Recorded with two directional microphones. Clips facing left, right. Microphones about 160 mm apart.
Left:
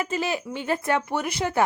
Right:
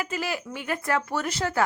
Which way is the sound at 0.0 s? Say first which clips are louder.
Left 3 dB; 25° left (ahead or behind).